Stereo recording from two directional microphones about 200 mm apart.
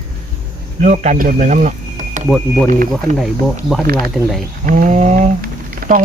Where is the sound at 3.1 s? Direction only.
Centre (ahead or behind).